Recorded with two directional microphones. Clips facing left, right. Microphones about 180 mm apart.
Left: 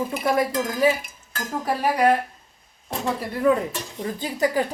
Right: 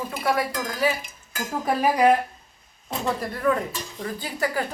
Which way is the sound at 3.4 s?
10° left (ahead or behind).